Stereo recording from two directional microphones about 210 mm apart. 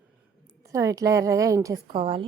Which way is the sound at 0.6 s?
15° right (ahead or behind).